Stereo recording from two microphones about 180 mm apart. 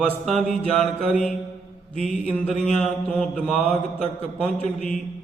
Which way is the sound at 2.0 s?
5° left (ahead or behind).